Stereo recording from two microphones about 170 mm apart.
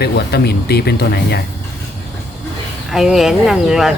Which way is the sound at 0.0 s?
75° left (ahead or behind).